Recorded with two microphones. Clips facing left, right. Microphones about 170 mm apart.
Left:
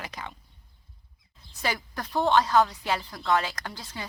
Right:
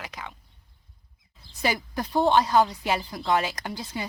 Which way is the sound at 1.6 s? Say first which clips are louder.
Right 4 dB; 15° right (ahead or behind).